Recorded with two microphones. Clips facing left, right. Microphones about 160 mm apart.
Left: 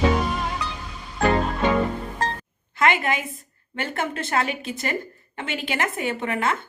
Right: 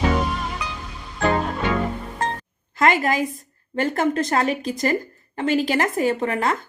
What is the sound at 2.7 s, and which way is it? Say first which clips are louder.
A woman's voice: right 3 dB; 40° right (ahead or behind).